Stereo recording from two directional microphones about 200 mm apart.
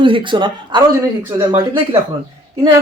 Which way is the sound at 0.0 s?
25° right (ahead or behind).